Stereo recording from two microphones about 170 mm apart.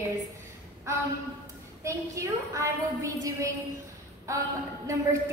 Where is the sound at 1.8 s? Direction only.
20° right (ahead or behind).